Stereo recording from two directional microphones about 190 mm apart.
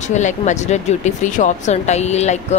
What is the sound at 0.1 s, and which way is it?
Speech, 40° left (ahead or behind).